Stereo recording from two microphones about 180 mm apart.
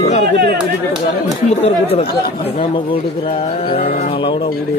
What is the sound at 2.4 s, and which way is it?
Speech, 30° left (ahead or behind).